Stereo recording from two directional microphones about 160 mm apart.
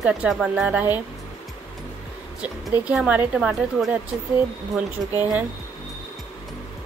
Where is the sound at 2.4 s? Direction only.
5° right (ahead or behind).